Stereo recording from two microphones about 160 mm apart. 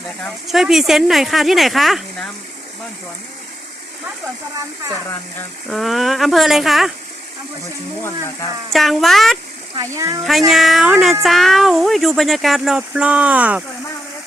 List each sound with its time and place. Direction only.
0.4 s speech: centre (ahead or behind)
5.7 s speech: centre (ahead or behind)
8.7 s speech: centre (ahead or behind)
9.7 s speech: 20° right (ahead or behind)
10.2 s speech: centre (ahead or behind)